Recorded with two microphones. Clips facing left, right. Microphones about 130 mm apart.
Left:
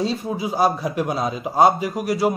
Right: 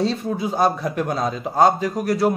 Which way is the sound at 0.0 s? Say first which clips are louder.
Right 1 dB; 5° left (ahead or behind).